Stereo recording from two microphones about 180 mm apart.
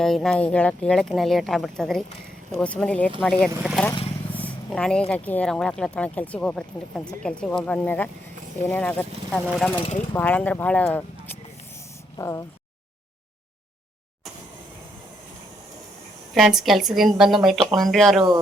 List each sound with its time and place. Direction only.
0.0 s speech: centre (ahead or behind); by 12.5 s 20° left (ahead or behind)
16.3 s speech: centre (ahead or behind)